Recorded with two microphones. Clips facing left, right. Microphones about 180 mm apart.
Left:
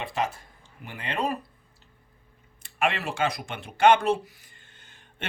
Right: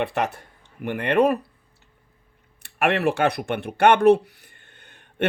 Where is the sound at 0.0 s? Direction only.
65° right (ahead or behind).